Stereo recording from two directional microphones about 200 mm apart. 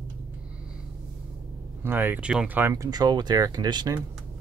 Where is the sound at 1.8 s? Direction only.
10° right (ahead or behind).